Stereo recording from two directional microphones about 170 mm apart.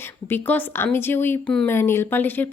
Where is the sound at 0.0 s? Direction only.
10° left (ahead or behind).